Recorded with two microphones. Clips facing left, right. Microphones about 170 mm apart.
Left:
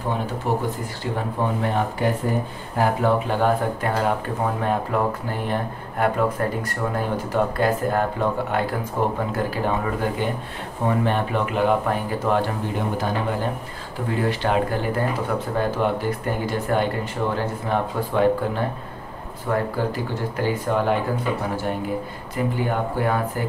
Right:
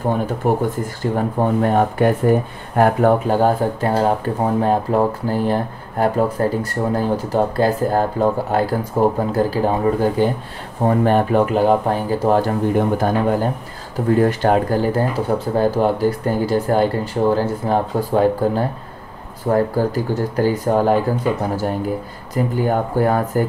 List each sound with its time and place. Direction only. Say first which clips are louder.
0.4 s speech: right 6 dB; 50° right (ahead or behind)
22.3 s speech: right 5 dB; 40° right (ahead or behind)